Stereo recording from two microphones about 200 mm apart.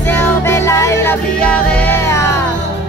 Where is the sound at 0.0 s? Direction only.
10° left (ahead or behind).